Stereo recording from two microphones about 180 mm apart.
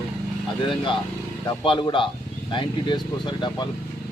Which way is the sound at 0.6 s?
30° left (ahead or behind).